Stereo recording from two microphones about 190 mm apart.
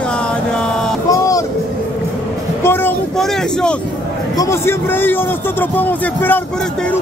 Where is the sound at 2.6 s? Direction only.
10° left (ahead or behind).